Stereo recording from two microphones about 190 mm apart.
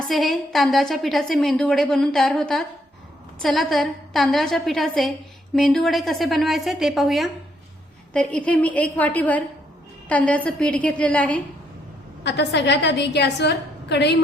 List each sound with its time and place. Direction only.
0.1 s a woman's voice: centre (ahead or behind)
12.2 s a woman's voice: 65° left (ahead or behind)